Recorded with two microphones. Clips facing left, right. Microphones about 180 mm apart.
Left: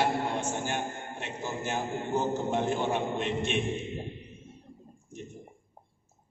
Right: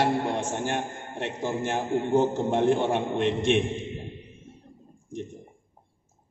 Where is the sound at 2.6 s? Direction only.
90° right.